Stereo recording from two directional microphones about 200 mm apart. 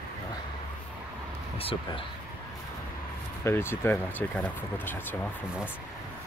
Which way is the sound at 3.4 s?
10° left (ahead or behind).